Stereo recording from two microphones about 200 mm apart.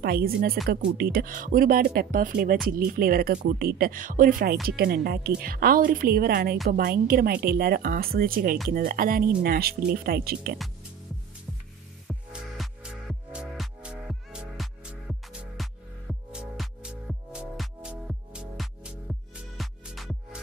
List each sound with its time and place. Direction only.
0.0 s speech: 50° right (ahead or behind)
12.1 s music: 5° right (ahead or behind)